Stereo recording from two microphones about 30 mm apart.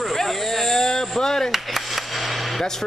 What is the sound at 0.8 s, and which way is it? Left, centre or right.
Speech, centre.